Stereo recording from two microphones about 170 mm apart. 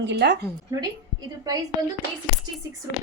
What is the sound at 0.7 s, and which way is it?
Speech, 20° right (ahead or behind).